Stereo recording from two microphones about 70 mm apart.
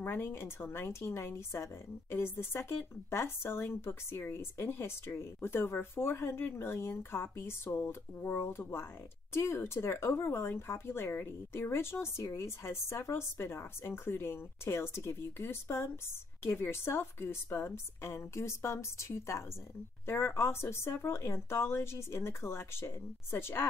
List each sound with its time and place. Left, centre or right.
0.0 s a woman's voice: left